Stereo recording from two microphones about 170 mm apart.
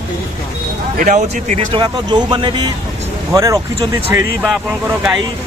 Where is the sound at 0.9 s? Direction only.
50° right (ahead or behind).